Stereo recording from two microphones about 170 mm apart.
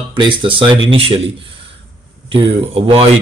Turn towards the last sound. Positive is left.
turn(degrees=-35)  # may be behind; listen again after turning